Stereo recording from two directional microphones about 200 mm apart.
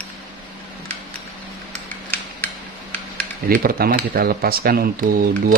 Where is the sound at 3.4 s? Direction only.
45° right (ahead or behind).